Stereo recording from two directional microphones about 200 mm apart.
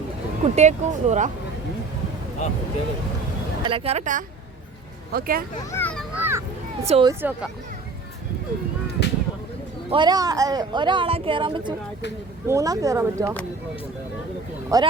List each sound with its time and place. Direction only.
0.4 s speech: 35° right (ahead or behind)
3.6 s speech: 25° right (ahead or behind)
5.1 s speech: 45° right (ahead or behind)
5.7 s children playing: 5° left (ahead or behind)
6.1 s children playing: 10° right (ahead or behind)
6.8 s speech: 30° right (ahead or behind)
7.1 s speech: 10° right (ahead or behind)
9.0 s a sound: 55° left (ahead or behind)
9.9 s speech: 20° right (ahead or behind)
14.7 s speech: 15° right (ahead or behind)